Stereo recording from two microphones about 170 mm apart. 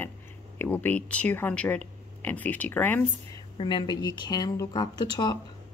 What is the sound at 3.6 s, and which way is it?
Speech, 25° left (ahead or behind).